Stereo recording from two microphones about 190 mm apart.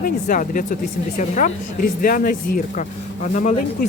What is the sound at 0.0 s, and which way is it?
Speech, 45° left (ahead or behind).